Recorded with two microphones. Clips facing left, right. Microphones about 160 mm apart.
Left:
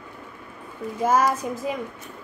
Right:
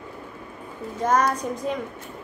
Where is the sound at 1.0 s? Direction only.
5° left (ahead or behind).